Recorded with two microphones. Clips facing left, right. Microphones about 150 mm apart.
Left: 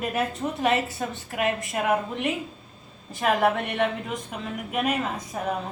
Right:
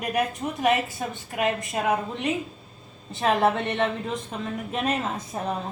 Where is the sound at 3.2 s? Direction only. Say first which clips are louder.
Right 1 dB; 25° right (ahead or behind).